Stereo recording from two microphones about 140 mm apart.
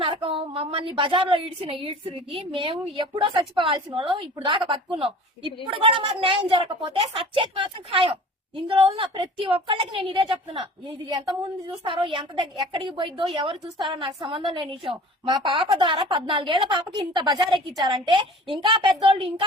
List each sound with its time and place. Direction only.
0.0 s a woman's voice: 40° right (ahead or behind)